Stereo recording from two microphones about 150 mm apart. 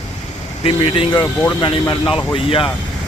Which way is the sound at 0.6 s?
35° left (ahead or behind).